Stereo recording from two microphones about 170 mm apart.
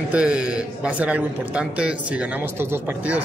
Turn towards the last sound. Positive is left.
turn(degrees=-10)  # may be behind; listen again after turning